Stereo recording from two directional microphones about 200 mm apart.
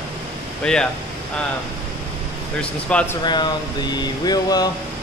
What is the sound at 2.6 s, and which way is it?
Speech, 5° left (ahead or behind).